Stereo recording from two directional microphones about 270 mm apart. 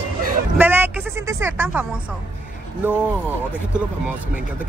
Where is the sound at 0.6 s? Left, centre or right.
Centre.